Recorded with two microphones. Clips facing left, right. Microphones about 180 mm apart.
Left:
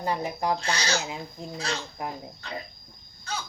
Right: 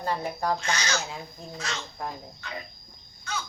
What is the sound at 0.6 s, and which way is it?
Speech, 35° left (ahead or behind).